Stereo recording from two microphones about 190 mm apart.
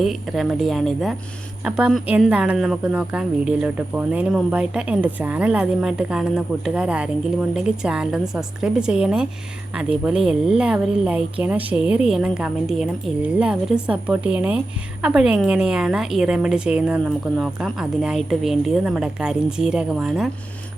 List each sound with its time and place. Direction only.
0.0 s a woman's voice: centre (ahead or behind)